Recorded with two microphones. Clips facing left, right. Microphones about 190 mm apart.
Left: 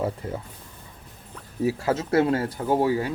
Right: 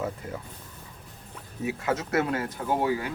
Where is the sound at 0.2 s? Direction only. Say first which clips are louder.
Left 4 dB; 30° left (ahead or behind).